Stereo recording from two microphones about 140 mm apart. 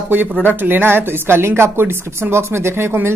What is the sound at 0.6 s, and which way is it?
A woman's voice, 15° right (ahead or behind).